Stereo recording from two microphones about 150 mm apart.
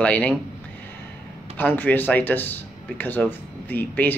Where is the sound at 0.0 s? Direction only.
10° left (ahead or behind).